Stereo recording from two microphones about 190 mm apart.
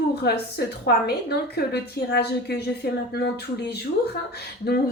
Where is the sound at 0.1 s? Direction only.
60° left (ahead or behind).